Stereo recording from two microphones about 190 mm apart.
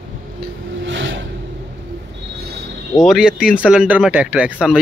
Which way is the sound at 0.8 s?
75° right (ahead or behind).